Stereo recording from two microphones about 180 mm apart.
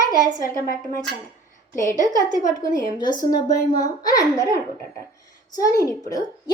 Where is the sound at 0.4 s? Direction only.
50° left (ahead or behind).